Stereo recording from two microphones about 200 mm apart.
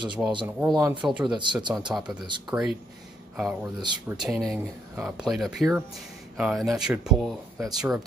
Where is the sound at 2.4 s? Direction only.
5° right (ahead or behind).